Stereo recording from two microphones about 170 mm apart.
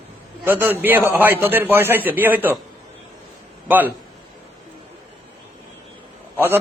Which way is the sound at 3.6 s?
10° right (ahead or behind).